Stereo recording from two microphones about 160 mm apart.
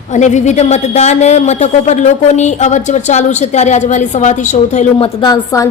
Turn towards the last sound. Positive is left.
turn(degrees=20)  # may be behind; listen again after turning